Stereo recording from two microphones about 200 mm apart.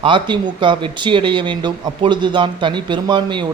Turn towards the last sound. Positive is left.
turn(degrees=-25)  # may be behind; listen again after turning